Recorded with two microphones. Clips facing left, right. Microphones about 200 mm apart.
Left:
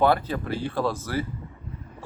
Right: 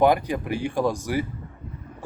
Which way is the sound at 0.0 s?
15° right (ahead or behind).